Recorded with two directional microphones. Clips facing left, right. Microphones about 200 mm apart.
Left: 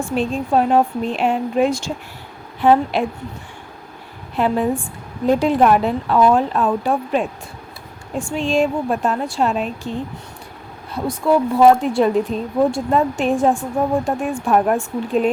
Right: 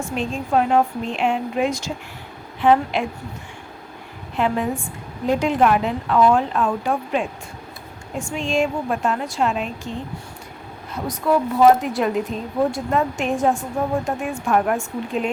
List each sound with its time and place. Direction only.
0.0 s speech: 35° left (ahead or behind)
4.4 s speech: 35° left (ahead or behind)
8.4 s speech: 35° left (ahead or behind)
11.1 s a woman's voice: 30° left (ahead or behind)